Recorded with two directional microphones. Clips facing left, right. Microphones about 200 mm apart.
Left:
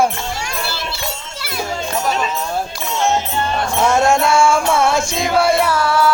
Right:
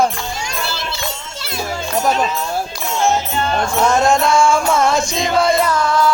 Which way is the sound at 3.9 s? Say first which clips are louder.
Left 1 dB; 10° left (ahead or behind).